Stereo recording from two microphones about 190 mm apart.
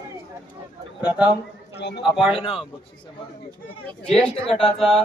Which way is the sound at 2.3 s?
30° left (ahead or behind).